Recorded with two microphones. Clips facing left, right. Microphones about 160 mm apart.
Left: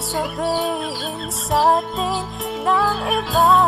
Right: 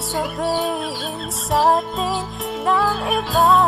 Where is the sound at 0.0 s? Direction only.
Centre (ahead or behind).